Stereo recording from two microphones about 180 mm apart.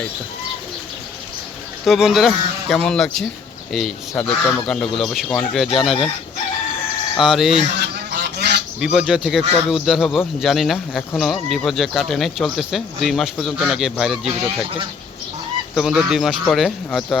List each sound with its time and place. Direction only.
1.8 s speech: centre (ahead or behind)
7.2 s speech: centre (ahead or behind)
7.8 s goose: 65° right (ahead or behind)
8.8 s speech: 5° right (ahead or behind)
15.7 s speech: 5° right (ahead or behind)